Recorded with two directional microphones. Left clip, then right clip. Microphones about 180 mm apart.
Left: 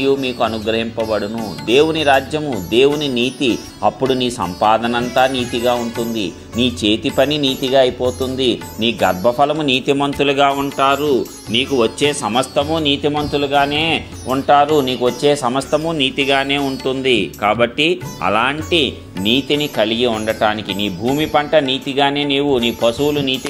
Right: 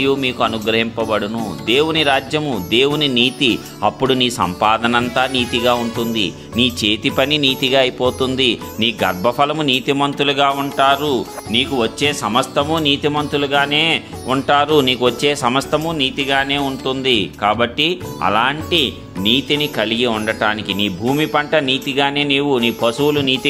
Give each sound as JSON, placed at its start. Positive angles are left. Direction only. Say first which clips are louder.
{"t": 0.0, "sound": "a man's voice", "louder": "even", "side_deg": -20}
{"t": 9.7, "sound": "a man's voice", "louder": "even", "side_deg": -5}
{"t": 10.6, "sound": "speech", "louder": "right 1 dB", "side_deg": -15}
{"t": 15.7, "sound": "a man's voice", "louder": "left 1 dB", "side_deg": 0}
{"t": 16.6, "sound": "speech", "louder": "left 1 dB", "side_deg": -10}